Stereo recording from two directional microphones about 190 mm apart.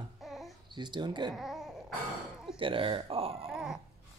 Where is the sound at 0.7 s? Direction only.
25° right (ahead or behind).